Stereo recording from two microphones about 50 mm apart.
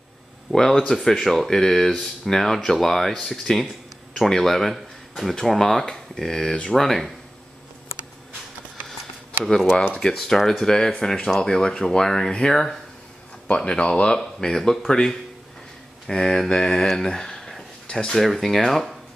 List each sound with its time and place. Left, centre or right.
0.5 s speech: centre
9.9 s speech: centre